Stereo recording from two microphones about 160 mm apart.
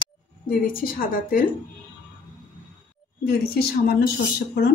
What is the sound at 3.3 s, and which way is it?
Speech, 75° left (ahead or behind).